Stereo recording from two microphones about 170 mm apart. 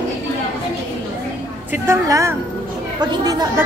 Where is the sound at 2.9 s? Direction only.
20° right (ahead or behind).